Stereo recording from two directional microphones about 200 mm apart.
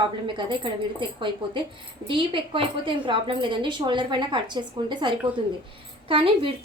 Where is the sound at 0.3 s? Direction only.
25° right (ahead or behind).